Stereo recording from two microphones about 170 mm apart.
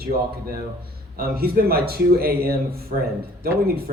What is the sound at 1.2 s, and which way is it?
Speech, 60° right (ahead or behind).